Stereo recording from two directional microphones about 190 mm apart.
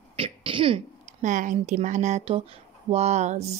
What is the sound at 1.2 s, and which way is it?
A woman's voice, 40° right (ahead or behind).